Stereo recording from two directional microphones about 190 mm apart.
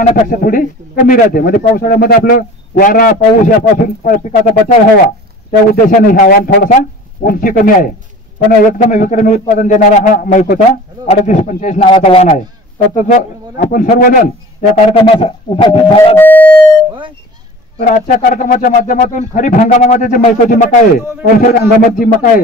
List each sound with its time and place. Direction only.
0.0 s a man's voice: 40° left (ahead or behind)
5.7 s a man's voice: 45° left (ahead or behind)
11.8 s speech: 25° left (ahead or behind); by 14.2 s 45° left (ahead or behind)
14.9 s a man's voice: 30° left (ahead or behind)
16.2 s a sound: 10° left (ahead or behind)
17.8 s a man's voice: 45° left (ahead or behind)